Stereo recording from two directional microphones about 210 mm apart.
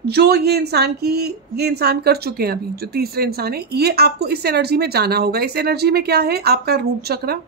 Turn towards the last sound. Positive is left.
turn(degrees=-50)  # may be behind; listen again after turning